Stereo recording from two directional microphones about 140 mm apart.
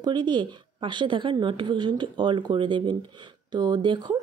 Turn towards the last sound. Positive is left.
turn(degrees=-35)  # may be behind; listen again after turning